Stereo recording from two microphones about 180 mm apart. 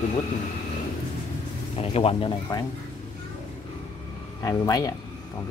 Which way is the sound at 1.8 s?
35° left (ahead or behind).